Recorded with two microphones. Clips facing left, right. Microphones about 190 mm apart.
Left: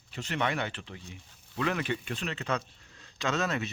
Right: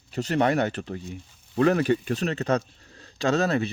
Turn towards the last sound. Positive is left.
turn(degrees=-35)  # may be behind; listen again after turning